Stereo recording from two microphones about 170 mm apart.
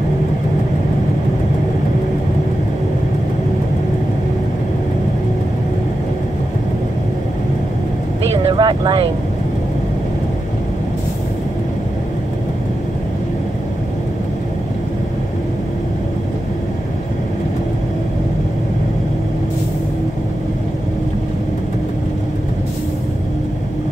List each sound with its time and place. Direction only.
8.5 s vehicle: 30° right (ahead or behind)